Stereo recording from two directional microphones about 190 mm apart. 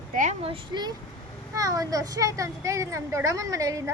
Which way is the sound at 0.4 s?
25° right (ahead or behind).